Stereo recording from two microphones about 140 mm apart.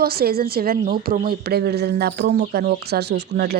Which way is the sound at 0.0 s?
90° right.